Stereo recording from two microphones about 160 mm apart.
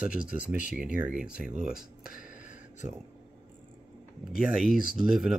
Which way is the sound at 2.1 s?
60° left (ahead or behind).